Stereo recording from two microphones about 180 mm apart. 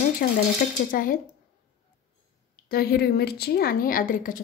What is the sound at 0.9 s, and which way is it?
Speech, 50° left (ahead or behind).